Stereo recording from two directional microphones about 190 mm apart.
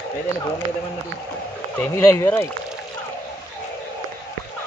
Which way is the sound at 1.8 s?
15° left (ahead or behind).